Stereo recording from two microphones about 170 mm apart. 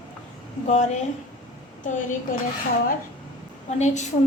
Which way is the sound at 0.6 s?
45° left (ahead or behind).